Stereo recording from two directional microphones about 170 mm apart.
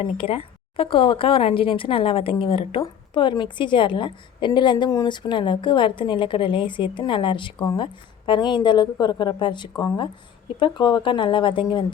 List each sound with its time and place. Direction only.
0.0 s a woman's voice: 30° left (ahead or behind)